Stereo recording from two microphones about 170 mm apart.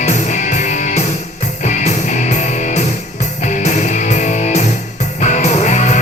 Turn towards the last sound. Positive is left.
turn(degrees=45)  # may be behind; listen again after turning